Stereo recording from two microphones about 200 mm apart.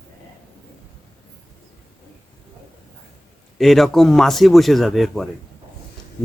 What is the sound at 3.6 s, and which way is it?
Speech, centre (ahead or behind).